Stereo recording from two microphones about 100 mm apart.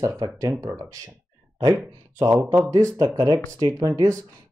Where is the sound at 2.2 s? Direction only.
25° right (ahead or behind).